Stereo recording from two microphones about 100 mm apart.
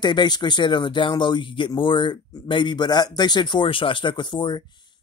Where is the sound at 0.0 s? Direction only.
50° left (ahead or behind).